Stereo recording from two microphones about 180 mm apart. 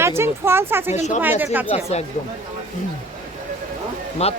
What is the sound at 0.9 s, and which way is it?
Speech, 40° left (ahead or behind).